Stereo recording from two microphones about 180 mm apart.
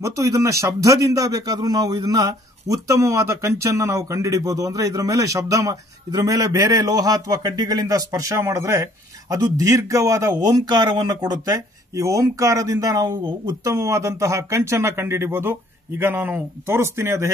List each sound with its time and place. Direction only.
0.0 s a man's voice: 15° right (ahead or behind)